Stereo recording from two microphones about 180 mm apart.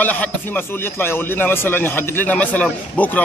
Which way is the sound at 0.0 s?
10° left (ahead or behind).